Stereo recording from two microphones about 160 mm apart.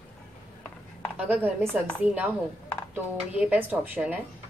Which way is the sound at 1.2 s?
10° right (ahead or behind).